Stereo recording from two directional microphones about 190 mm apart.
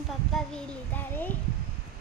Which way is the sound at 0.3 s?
5° left (ahead or behind).